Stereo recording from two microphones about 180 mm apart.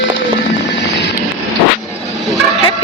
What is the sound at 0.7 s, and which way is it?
Vehicle, 75° left (ahead or behind).